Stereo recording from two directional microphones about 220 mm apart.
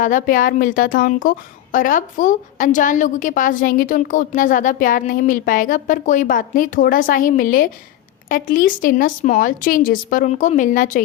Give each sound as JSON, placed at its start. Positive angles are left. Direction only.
{"t": 0.0, "sound": "a woman's voice", "side_deg": 35}